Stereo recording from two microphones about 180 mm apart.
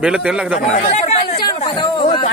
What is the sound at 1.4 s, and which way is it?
Chatter, 25° left (ahead or behind).